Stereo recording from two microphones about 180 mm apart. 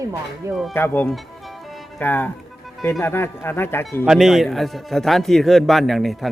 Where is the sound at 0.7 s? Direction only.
10° left (ahead or behind).